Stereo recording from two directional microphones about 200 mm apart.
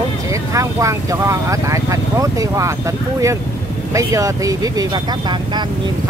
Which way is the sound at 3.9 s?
15° right (ahead or behind).